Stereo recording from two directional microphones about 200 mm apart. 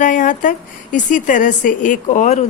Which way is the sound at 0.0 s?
40° left (ahead or behind).